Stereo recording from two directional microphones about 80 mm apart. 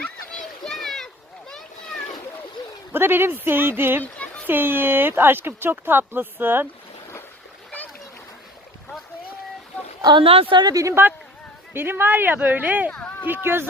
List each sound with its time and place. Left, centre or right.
0.6 s splash: centre
2.9 s speech: right
10.0 s a woman's voice: right
10.5 s a woman's voice: right
11.7 s speech: right